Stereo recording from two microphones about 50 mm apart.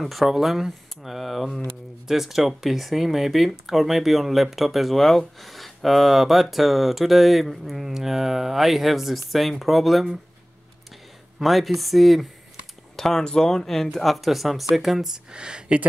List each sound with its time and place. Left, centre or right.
0.0 s speech: centre
11.3 s speech: centre
12.9 s a sound: centre
13.2 s speech: centre
15.3 s speech: centre